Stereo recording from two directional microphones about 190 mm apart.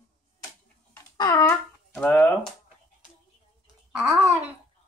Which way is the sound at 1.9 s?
5° left (ahead or behind).